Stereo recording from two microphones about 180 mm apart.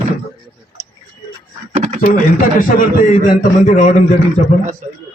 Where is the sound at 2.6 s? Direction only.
50° left (ahead or behind).